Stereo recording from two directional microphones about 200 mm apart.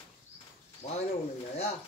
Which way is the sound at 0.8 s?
35° left (ahead or behind).